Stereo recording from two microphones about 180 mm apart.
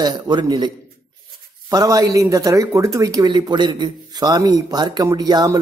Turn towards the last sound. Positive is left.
turn(degrees=-20)  # may be behind; listen again after turning